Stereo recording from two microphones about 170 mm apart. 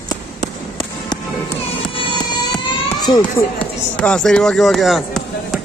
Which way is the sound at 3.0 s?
25° left (ahead or behind).